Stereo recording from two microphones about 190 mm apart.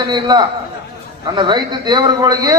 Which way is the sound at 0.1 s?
20° right (ahead or behind).